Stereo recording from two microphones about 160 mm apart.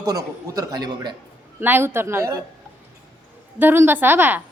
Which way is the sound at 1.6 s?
15° right (ahead or behind).